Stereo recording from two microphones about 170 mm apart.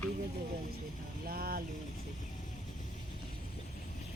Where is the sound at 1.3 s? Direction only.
60° right (ahead or behind).